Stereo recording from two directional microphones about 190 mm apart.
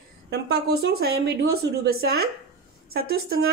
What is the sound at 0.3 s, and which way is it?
A woman's voice, 60° right (ahead or behind).